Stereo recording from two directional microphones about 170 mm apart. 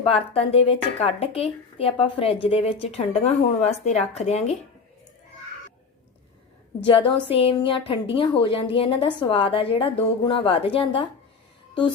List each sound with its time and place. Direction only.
0.0 s speech: 35° left (ahead or behind)
6.8 s speech: 35° left (ahead or behind)